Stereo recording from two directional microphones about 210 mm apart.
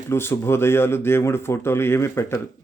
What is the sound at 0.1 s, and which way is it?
Speech, 10° left (ahead or behind).